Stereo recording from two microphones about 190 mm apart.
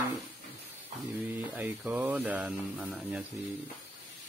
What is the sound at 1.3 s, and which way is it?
Speech, 10° right (ahead or behind).